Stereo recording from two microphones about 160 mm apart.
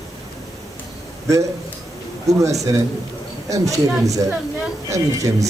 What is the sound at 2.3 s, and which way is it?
A man's voice, 20° right (ahead or behind).